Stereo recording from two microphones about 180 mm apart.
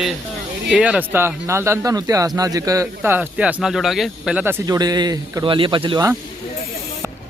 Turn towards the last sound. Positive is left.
turn(degrees=-20)  # may be behind; listen again after turning